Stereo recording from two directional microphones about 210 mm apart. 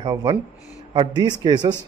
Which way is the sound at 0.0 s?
20° right (ahead or behind).